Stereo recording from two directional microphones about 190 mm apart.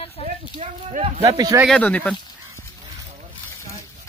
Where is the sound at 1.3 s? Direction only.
15° right (ahead or behind).